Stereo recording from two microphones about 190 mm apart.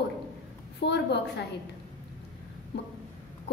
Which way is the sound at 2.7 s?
65° left (ahead or behind).